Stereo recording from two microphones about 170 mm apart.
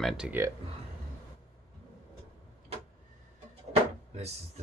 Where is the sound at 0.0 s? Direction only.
5° right (ahead or behind).